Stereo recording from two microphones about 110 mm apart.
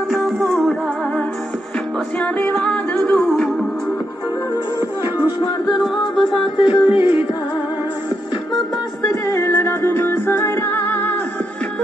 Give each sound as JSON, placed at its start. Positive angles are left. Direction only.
{"t": 0.1, "sound": "music", "side_deg": 0}
{"t": 2.1, "sound": "music", "side_deg": 10}
{"t": 5.7, "sound": "music", "side_deg": 0}
{"t": 6.5, "sound": "music", "side_deg": 55}
{"t": 9.0, "sound": "music", "side_deg": 25}